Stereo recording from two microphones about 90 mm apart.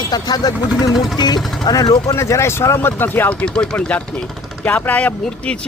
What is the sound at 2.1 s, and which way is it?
Speech, 30° left (ahead or behind).